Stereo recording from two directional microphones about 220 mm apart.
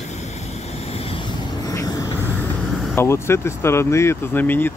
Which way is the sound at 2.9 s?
10° left (ahead or behind).